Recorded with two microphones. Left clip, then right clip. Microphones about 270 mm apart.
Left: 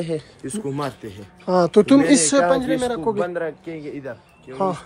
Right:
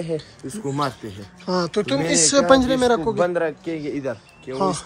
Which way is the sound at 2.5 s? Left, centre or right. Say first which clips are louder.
Right 4 dB; right.